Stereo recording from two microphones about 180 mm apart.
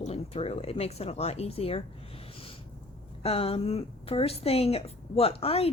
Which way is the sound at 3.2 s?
30° left (ahead or behind).